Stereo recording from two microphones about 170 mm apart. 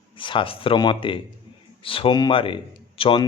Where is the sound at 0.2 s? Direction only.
30° left (ahead or behind).